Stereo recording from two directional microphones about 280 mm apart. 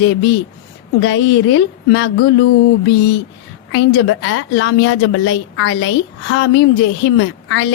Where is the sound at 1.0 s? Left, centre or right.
Left.